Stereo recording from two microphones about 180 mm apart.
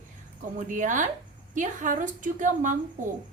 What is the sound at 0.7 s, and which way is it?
A woman's voice, 45° right (ahead or behind).